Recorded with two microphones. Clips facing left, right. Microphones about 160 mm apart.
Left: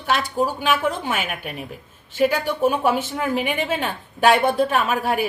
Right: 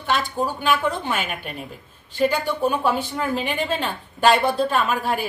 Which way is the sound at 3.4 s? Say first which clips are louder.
Left 1 dB; centre (ahead or behind).